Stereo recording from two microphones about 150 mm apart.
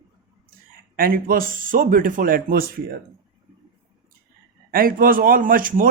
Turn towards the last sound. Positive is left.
turn(degrees=-70)  # may be behind; listen again after turning